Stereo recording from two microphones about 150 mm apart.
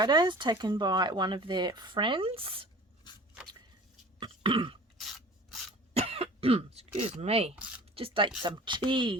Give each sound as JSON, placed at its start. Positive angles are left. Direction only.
{"t": 0.0, "sound": "speech", "side_deg": -30}
{"t": 3.1, "sound": "a sound", "side_deg": 30}
{"t": 4.2, "sound": "throat clearing", "side_deg": -35}
{"t": 5.9, "sound": "cough", "side_deg": -40}
{"t": 7.9, "sound": "speech", "side_deg": -35}